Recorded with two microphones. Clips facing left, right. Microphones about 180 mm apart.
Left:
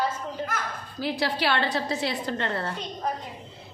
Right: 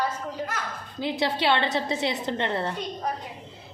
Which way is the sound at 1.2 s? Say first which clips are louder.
Right 2 dB; 20° right (ahead or behind).